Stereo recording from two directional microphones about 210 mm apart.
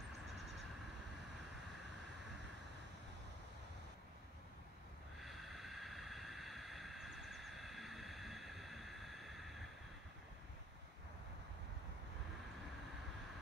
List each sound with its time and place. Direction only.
5.2 s vehicle: centre (ahead or behind)